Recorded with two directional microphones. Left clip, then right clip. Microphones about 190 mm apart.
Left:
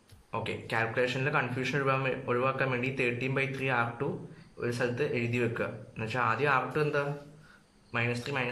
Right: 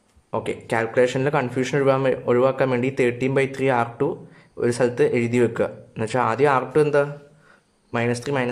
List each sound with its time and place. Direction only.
0.3 s speech: 35° right (ahead or behind)